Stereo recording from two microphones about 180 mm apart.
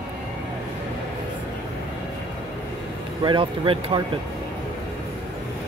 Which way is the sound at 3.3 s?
30° right (ahead or behind).